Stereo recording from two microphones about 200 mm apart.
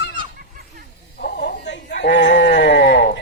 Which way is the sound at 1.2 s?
60° left (ahead or behind).